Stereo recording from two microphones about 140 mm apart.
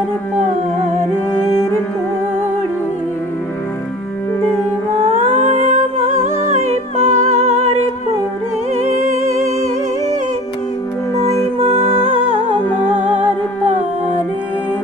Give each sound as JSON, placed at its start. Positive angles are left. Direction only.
{"t": 5.3, "sound": "humming", "side_deg": -55}
{"t": 6.4, "sound": "music", "side_deg": -55}
{"t": 8.7, "sound": "music", "side_deg": -55}